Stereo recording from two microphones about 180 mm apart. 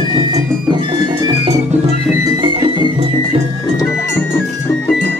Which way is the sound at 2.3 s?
25° right (ahead or behind).